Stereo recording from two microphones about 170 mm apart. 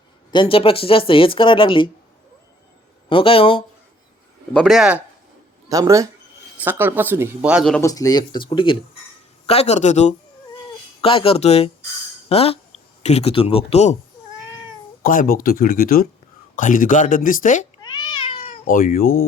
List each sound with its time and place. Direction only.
0.3 s speech: 30° left (ahead or behind)
3.1 s speech: 30° left (ahead or behind)
4.5 s speech: centre (ahead or behind)
5.6 s speech: 20° right (ahead or behind); by 7.8 s centre (ahead or behind)
7.8 s speech: 20° left (ahead or behind); by 10.2 s 45° left (ahead or behind)
11.0 s speech: 35° left (ahead or behind)
15.0 s speech: 55° left (ahead or behind)
17.8 s cat: 25° left (ahead or behind)
18.6 s speech: 55° left (ahead or behind)